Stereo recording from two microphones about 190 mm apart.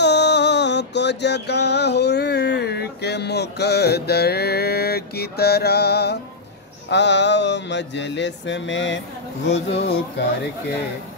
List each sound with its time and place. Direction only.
0.0 s music: 65° left (ahead or behind)
6.9 s mantra: 65° left (ahead or behind)
9.5 s speech: 60° left (ahead or behind)